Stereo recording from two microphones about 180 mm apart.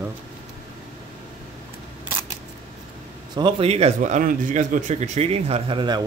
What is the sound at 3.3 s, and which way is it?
A man's voice, 30° right (ahead or behind).